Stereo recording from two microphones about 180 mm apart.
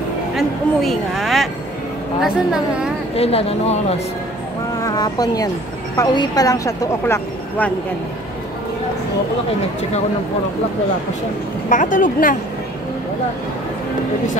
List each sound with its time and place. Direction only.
0.4 s a woman's voice: centre (ahead or behind)
3.2 s speech: 35° left (ahead or behind)
4.8 s speech: 20° left (ahead or behind)
11.7 s a woman's voice: 45° left (ahead or behind)